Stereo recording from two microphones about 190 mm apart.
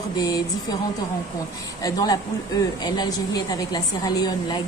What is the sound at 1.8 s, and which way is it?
Speech, 20° left (ahead or behind).